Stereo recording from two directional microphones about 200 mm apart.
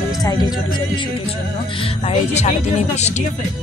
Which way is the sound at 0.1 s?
20° left (ahead or behind).